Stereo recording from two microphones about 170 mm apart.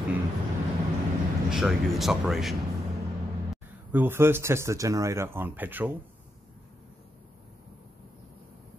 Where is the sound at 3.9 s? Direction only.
15° right (ahead or behind).